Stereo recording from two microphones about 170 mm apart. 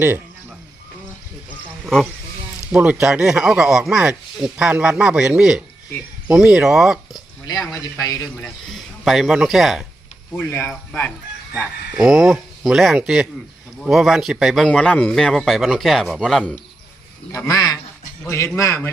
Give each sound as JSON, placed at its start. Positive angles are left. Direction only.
{"t": 2.7, "sound": "speech", "side_deg": -5}
{"t": 7.4, "sound": "a man's voice", "side_deg": 20}
{"t": 8.4, "sound": "speech", "side_deg": 0}
{"t": 10.3, "sound": "a man's voice", "side_deg": 15}
{"t": 11.5, "sound": "speech", "side_deg": 0}
{"t": 17.3, "sound": "a man's voice", "side_deg": 20}